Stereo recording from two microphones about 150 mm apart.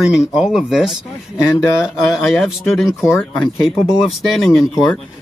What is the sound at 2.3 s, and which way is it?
Speech, centre (ahead or behind).